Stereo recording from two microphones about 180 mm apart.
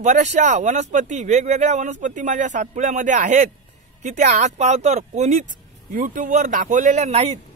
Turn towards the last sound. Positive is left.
turn(degrees=-35)  # may be behind; listen again after turning